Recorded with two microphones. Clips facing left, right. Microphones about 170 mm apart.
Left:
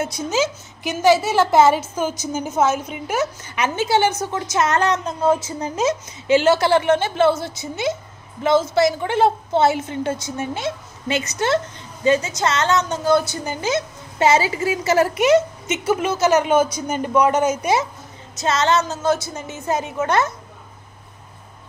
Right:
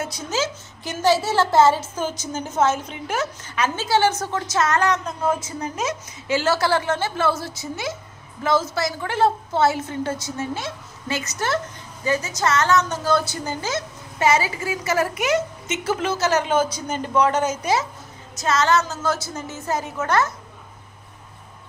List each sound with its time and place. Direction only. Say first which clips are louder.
0.0 s a woman's voice: left 4 dB; 15° left (ahead or behind)